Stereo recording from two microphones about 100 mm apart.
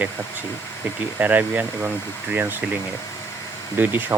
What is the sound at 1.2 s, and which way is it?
Speech, 15° right (ahead or behind).